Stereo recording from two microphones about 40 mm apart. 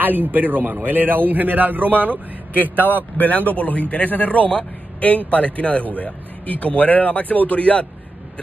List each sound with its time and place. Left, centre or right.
0.0 s a man's voice: right
3.2 s speech: left